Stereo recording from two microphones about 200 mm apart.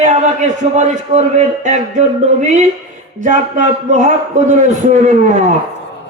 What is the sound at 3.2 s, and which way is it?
A man's voice, 40° right (ahead or behind).